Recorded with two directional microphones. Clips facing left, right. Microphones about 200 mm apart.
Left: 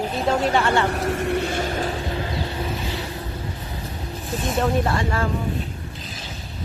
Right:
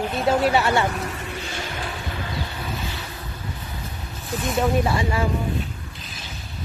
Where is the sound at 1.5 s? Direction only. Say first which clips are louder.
Left 7 dB; 40° left (ahead or behind).